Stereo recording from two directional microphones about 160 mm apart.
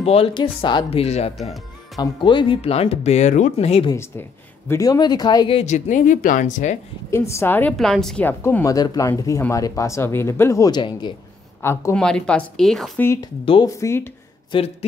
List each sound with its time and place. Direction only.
0.0 s speech: 35° left (ahead or behind)
2.0 s speech: 30° left (ahead or behind)
3.9 s speech: 15° left (ahead or behind)
5.6 s speech: 50° left (ahead or behind)
7.1 s speech: 15° left (ahead or behind)
11.6 s speech: 15° left (ahead or behind)
12.0 s speech: 5° left (ahead or behind)
13.0 s speech: 15° left (ahead or behind)
14.5 s speech: 40° left (ahead or behind)